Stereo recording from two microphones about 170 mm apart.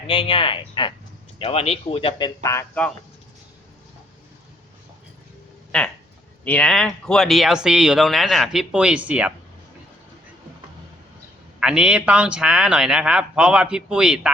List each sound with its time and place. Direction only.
0.1 s speech: 30° left (ahead or behind)
5.7 s speech: 5° left (ahead or behind)
11.6 s speech: 5° right (ahead or behind)